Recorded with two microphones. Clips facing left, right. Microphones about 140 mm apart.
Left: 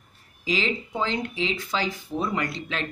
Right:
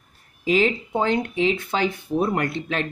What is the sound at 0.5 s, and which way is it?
Speech, 50° right (ahead or behind).